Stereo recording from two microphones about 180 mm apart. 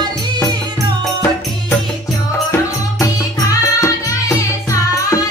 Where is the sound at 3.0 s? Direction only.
15° left (ahead or behind).